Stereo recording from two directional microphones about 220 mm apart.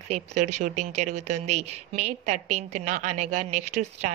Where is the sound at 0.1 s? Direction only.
35° right (ahead or behind).